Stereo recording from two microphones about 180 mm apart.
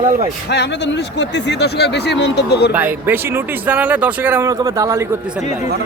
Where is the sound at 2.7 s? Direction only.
10° right (ahead or behind).